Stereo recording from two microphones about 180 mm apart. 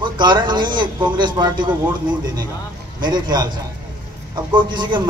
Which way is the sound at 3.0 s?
25° right (ahead or behind).